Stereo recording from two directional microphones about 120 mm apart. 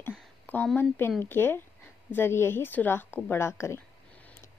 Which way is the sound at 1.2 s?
20° left (ahead or behind).